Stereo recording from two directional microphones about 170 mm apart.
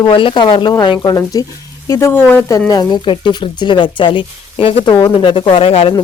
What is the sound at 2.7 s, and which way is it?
Speech, 25° left (ahead or behind).